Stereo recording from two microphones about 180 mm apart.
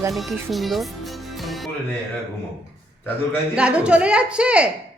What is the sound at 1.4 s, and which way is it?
Music, centre (ahead or behind).